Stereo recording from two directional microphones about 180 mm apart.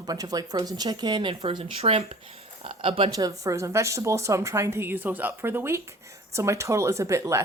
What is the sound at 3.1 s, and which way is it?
Speech, 20° right (ahead or behind).